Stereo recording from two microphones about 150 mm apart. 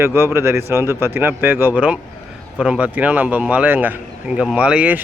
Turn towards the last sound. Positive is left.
turn(degrees=-10)  # may be behind; listen again after turning